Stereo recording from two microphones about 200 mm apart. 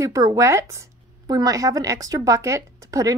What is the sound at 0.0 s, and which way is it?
Speech, 15° right (ahead or behind).